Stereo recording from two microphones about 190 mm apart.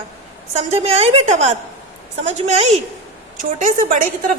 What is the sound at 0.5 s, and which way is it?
A woman's voice, 35° right (ahead or behind).